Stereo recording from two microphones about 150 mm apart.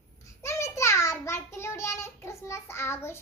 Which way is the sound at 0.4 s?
20° left (ahead or behind).